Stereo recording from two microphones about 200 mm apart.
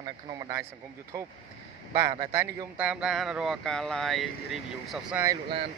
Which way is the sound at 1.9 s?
15° right (ahead or behind).